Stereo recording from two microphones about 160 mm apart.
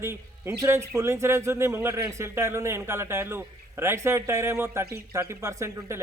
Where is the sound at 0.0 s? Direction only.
15° right (ahead or behind).